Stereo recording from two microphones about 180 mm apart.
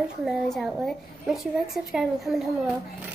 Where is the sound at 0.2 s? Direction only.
Centre (ahead or behind).